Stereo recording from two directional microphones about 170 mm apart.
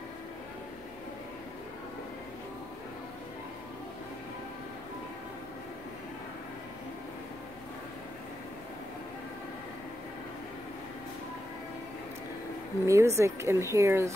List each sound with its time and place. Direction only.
12.8 s speech: 15° right (ahead or behind)